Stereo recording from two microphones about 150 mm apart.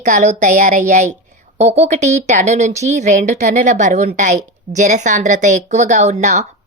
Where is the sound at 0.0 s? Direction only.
55° right (ahead or behind).